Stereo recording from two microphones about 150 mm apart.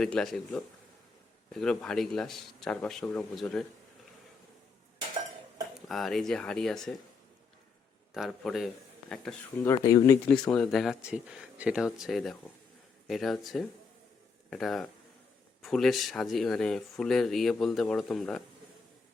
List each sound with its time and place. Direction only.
0.0 s speech: 5° left (ahead or behind)
5.9 s speech: centre (ahead or behind)
8.1 s a man's voice: centre (ahead or behind)
9.6 s speech: 20° left (ahead or behind)
10.5 s speech: centre (ahead or behind)